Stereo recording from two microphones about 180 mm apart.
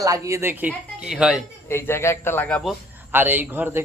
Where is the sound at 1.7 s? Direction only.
15° left (ahead or behind).